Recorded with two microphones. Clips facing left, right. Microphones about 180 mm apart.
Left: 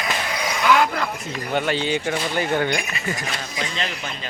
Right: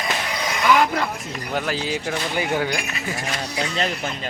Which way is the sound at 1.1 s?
Centre (ahead or behind).